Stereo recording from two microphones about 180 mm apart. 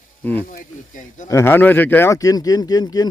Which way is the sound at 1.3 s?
15° left (ahead or behind).